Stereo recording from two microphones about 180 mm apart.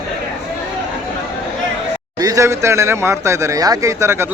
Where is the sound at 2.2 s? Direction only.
20° right (ahead or behind).